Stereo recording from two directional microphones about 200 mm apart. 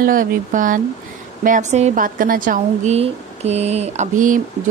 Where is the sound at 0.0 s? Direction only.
45° right (ahead or behind).